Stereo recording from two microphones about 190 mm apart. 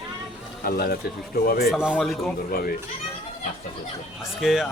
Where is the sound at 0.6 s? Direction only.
55° left (ahead or behind).